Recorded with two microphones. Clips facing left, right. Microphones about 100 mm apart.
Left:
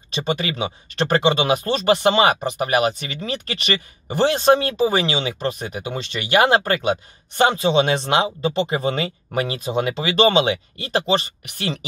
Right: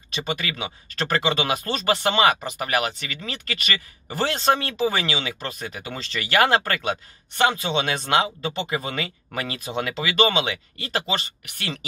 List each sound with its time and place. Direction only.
0.1 s speech: 25° left (ahead or behind)